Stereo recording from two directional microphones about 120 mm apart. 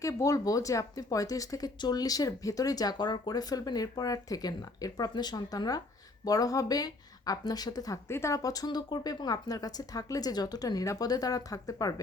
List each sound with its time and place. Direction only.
0.0 s speech: 25° left (ahead or behind)